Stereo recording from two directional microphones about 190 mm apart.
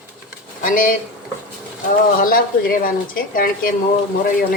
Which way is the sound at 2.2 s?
50° left (ahead or behind).